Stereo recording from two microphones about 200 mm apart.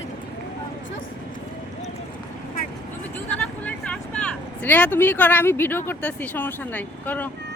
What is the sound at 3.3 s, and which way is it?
Speech, 5° left (ahead or behind).